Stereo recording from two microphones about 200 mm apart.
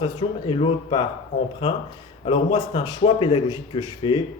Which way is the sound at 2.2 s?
30° left (ahead or behind).